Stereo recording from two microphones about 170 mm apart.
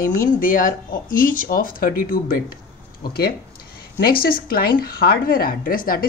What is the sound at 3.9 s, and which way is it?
Speech, 60° left (ahead or behind).